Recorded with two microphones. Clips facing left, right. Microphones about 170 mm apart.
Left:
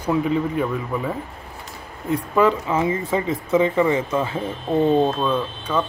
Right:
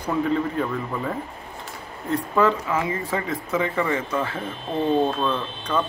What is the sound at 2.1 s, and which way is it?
Speech, 15° left (ahead or behind).